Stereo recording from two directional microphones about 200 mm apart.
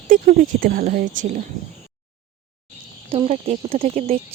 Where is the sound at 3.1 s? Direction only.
30° right (ahead or behind).